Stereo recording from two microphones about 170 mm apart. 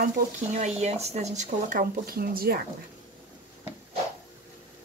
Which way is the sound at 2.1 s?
60° right (ahead or behind).